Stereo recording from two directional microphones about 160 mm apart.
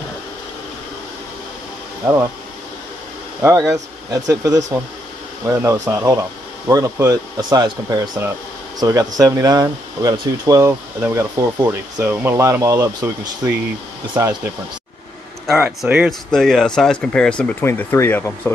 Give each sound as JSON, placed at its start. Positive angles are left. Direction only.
{"t": 2.0, "sound": "speech", "side_deg": -10}
{"t": 3.4, "sound": "speech", "side_deg": -20}
{"t": 15.4, "sound": "speech", "side_deg": -5}